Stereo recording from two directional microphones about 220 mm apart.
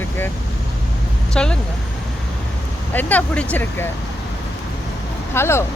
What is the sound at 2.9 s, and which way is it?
Speech, 5° left (ahead or behind).